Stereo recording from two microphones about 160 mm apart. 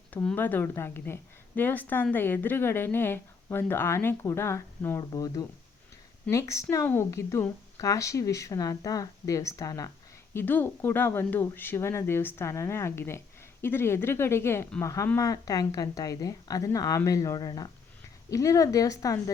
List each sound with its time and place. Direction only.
0.1 s speech: 10° left (ahead or behind)